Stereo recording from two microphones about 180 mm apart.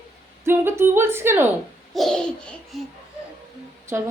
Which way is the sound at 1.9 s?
5° left (ahead or behind).